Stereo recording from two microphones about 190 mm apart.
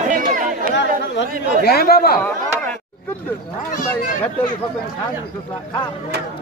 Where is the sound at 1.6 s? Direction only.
55° left (ahead or behind).